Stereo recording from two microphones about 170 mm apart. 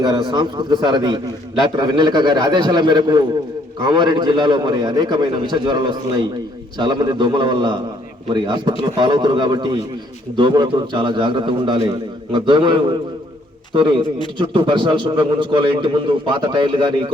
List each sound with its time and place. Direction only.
0.0 s a man's voice: 25° right (ahead or behind)